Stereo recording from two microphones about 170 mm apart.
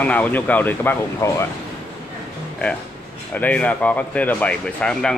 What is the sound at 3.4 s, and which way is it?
Speech, 10° left (ahead or behind).